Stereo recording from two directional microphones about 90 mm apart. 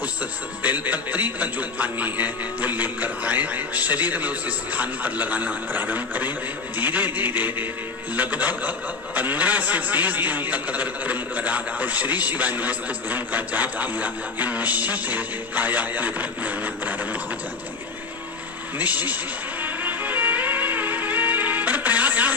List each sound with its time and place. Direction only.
0.0 s a man's voice: 15° right (ahead or behind)
18.8 s a man's voice: 20° right (ahead or behind)
19.6 s music: 20° right (ahead or behind)